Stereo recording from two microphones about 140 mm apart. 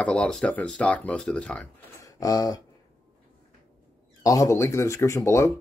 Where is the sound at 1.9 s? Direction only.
25° left (ahead or behind).